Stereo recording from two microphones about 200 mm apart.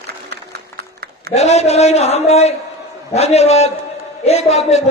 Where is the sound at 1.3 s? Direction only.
35° left (ahead or behind).